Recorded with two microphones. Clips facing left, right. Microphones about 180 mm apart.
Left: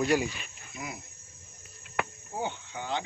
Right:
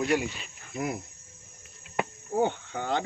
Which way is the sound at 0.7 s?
50° right (ahead or behind).